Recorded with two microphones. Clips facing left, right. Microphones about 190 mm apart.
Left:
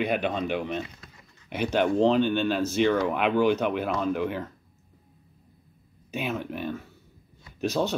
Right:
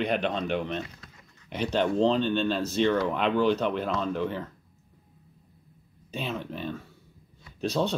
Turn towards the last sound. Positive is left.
turn(degrees=5)  # may be behind; listen again after turning